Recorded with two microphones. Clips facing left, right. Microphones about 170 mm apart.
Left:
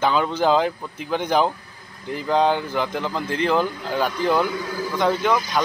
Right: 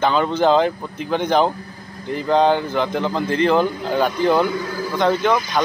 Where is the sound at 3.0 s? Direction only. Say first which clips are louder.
Right 5 dB; 25° right (ahead or behind).